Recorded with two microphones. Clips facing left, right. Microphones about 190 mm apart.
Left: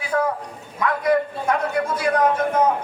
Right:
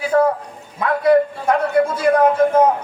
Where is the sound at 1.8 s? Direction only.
30° right (ahead or behind).